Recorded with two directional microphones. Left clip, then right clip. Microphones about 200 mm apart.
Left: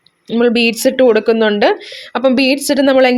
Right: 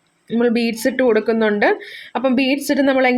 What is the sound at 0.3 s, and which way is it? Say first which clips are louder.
A woman's voice: left 6 dB; 25° left (ahead or behind).